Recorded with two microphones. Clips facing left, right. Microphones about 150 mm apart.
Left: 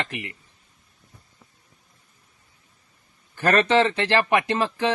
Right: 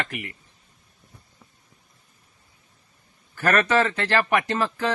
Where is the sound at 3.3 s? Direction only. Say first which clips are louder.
Left 2 dB; 20° left (ahead or behind).